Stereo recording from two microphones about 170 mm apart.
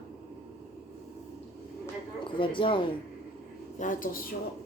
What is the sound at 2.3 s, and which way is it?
Speech, 30° left (ahead or behind).